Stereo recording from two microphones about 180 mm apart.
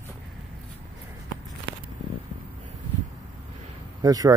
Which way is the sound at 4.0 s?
20° right (ahead or behind).